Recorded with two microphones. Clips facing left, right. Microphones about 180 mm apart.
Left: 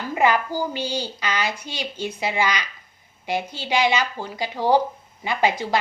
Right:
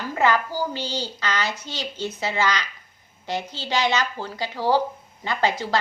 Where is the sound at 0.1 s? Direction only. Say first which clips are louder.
Left 1 dB; 15° left (ahead or behind).